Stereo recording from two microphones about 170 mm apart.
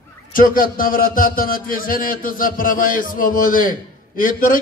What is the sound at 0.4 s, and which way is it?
A man's voice, 55° left (ahead or behind).